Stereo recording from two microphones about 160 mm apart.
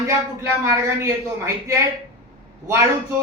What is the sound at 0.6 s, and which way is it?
A man's voice, 20° right (ahead or behind).